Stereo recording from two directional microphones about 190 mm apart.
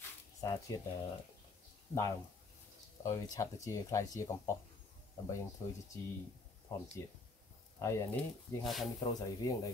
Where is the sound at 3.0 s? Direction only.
15° left (ahead or behind).